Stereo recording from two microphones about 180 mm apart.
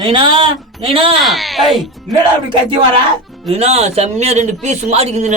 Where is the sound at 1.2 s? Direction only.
Centre (ahead or behind).